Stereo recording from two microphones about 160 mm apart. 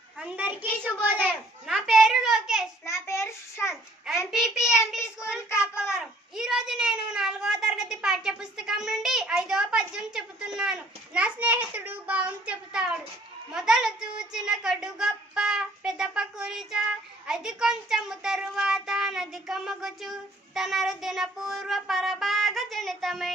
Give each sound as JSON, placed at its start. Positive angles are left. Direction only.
{"t": 0.2, "sound": "a child's voice", "side_deg": -10}
{"t": 2.8, "sound": "child singing", "side_deg": 15}
{"t": 4.1, "sound": "child singing", "side_deg": 0}
{"t": 4.7, "sound": "a child's voice", "side_deg": 15}
{"t": 5.9, "sound": "a child's voice", "side_deg": -5}